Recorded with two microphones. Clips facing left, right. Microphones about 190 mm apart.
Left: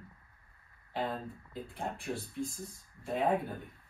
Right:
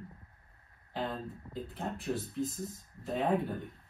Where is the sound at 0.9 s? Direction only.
Centre (ahead or behind).